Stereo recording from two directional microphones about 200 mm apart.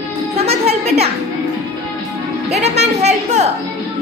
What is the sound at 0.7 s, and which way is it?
Speech, 30° right (ahead or behind).